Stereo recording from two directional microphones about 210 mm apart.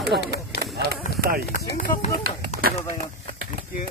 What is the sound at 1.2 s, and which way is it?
Run, 45° right (ahead or behind).